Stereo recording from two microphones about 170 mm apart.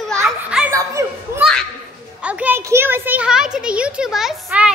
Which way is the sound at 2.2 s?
5° right (ahead or behind).